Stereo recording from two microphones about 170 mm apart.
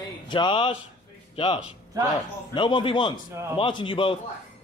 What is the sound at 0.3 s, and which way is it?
A man's voice, 30° left (ahead or behind).